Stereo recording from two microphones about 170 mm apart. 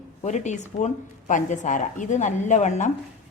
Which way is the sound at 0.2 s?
45° left (ahead or behind).